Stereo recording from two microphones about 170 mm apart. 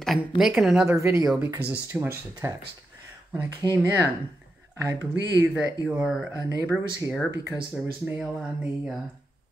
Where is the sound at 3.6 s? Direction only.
25° left (ahead or behind).